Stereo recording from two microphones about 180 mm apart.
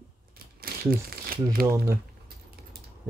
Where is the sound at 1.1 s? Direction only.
55° right (ahead or behind).